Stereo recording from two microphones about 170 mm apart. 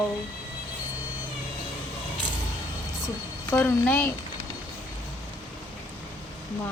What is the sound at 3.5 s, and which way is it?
Speech, 10° left (ahead or behind).